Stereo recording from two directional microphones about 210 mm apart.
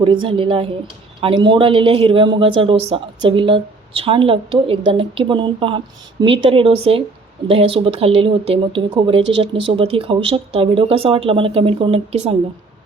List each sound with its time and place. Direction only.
0.0 s speech: 25° right (ahead or behind)